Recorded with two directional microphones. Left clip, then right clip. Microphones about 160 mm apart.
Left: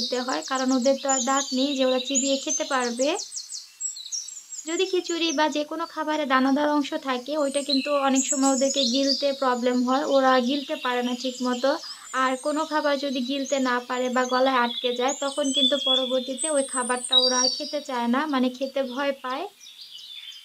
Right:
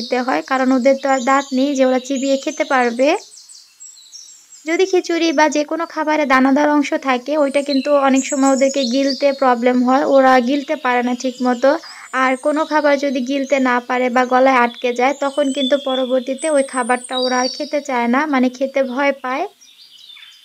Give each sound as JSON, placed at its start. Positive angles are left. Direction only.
{"t": 0.1, "sound": "speech", "side_deg": -35}
{"t": 4.6, "sound": "speech", "side_deg": -40}